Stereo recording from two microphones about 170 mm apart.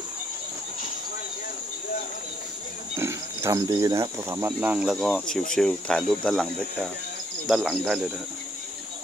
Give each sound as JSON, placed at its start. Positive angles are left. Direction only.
{"t": 3.0, "sound": "speech", "side_deg": -15}